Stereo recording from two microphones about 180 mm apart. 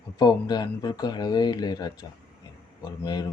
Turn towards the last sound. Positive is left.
turn(degrees=20)  # may be behind; listen again after turning